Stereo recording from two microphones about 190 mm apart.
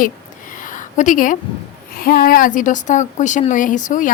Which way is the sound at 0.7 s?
45° left (ahead or behind).